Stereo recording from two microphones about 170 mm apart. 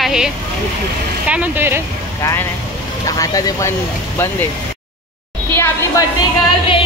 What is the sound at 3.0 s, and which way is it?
Speech, 20° left (ahead or behind).